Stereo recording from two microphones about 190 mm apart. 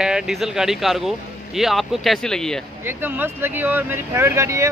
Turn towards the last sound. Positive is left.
turn(degrees=-15)  # may be behind; listen again after turning